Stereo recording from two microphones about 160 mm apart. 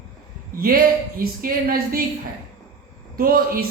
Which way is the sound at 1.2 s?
65° right (ahead or behind).